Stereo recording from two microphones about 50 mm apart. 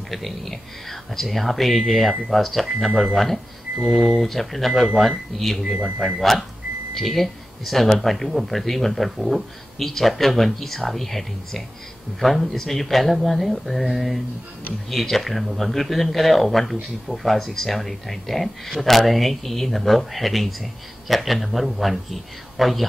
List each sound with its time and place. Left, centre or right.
0.1 s speech: centre
3.7 s speech: right
4.2 s speech: centre